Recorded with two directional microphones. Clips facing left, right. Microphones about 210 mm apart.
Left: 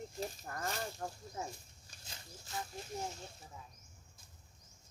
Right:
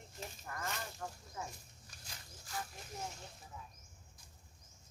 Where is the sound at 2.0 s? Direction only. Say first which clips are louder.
Left 3 dB; 25° left (ahead or behind).